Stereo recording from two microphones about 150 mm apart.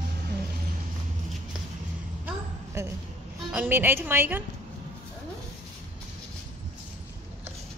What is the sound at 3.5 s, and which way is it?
Speech, 15° right (ahead or behind).